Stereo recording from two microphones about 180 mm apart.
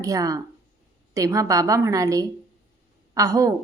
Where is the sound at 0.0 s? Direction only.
20° right (ahead or behind).